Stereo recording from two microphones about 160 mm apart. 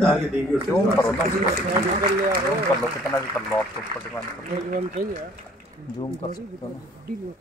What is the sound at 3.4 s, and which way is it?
Speech, 15° left (ahead or behind).